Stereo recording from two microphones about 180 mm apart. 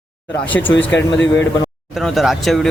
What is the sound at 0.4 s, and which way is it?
A man's voice, 10° left (ahead or behind).